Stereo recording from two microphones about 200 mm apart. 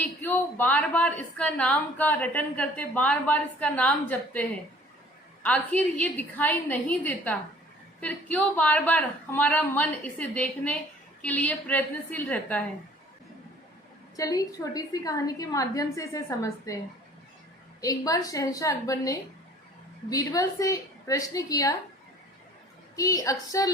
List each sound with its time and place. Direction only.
0.0 s a woman's voice: 10° left (ahead or behind)
14.2 s a woman's voice: 15° left (ahead or behind)
17.7 s a woman's voice: 15° left (ahead or behind)
23.0 s a woman's voice: 15° left (ahead or behind)